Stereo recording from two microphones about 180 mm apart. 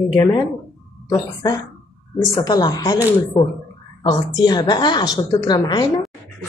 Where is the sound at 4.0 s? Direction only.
25° left (ahead or behind).